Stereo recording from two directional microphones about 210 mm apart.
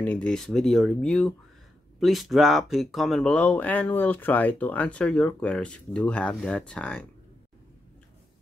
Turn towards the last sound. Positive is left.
turn(degrees=5)  # may be behind; listen again after turning